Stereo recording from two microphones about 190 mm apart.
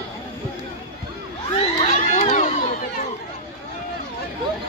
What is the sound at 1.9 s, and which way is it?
Crowd, 40° left (ahead or behind).